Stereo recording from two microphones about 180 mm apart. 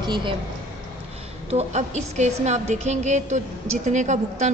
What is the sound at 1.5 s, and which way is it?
A woman's voice, 35° right (ahead or behind).